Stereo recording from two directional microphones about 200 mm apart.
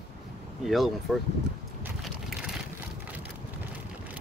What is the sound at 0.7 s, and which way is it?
Speech, centre (ahead or behind).